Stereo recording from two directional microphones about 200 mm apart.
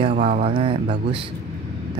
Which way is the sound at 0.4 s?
25° right (ahead or behind).